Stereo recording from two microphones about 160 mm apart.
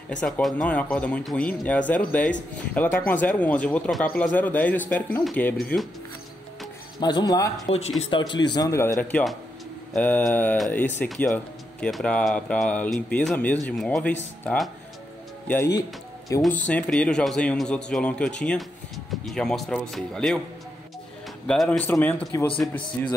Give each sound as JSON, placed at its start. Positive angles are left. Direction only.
{"t": 0.2, "sound": "a man's voice", "side_deg": 5}
{"t": 7.0, "sound": "speech", "side_deg": 25}
{"t": 8.9, "sound": "a man's voice", "side_deg": 5}
{"t": 21.5, "sound": "speech", "side_deg": 5}